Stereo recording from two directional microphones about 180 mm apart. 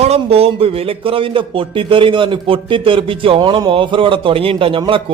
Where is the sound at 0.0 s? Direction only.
35° right (ahead or behind).